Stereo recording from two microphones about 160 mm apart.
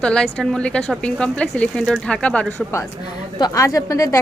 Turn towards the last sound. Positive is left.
turn(degrees=20)  # may be behind; listen again after turning